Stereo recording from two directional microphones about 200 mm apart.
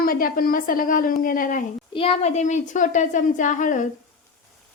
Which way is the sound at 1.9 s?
30° left (ahead or behind).